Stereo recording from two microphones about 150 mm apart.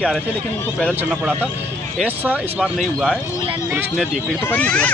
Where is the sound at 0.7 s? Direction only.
Centre (ahead or behind).